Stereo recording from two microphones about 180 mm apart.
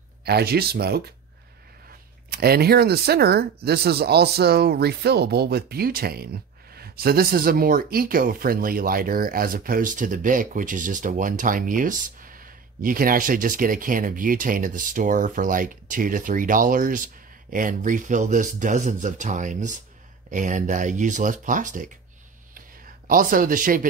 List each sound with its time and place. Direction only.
0.2 s speech: 65° right (ahead or behind)
2.3 s speech: 60° right (ahead or behind)
23.0 s speech: 50° right (ahead or behind)